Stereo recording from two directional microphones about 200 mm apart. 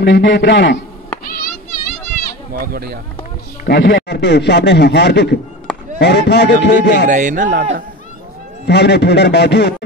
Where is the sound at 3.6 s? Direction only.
60° left (ahead or behind).